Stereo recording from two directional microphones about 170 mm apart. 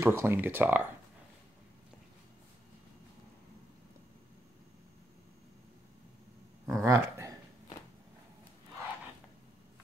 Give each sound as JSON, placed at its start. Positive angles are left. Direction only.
{"t": 0.0, "sound": "speech", "side_deg": -15}
{"t": 6.7, "sound": "speech", "side_deg": -15}